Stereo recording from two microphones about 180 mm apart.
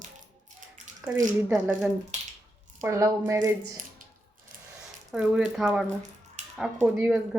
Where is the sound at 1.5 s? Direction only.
5° right (ahead or behind).